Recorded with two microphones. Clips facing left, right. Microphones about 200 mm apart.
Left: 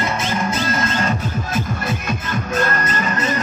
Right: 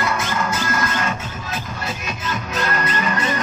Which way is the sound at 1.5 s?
50° left (ahead or behind).